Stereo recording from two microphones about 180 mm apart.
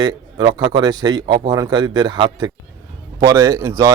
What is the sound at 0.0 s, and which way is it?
Speech, 25° right (ahead or behind).